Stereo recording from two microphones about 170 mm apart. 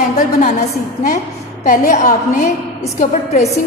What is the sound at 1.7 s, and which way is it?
A woman's voice, 45° left (ahead or behind).